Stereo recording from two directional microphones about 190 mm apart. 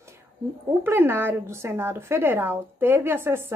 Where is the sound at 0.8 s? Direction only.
10° right (ahead or behind).